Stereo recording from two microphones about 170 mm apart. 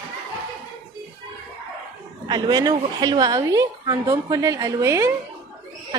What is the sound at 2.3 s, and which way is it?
A woman's voice, 25° right (ahead or behind).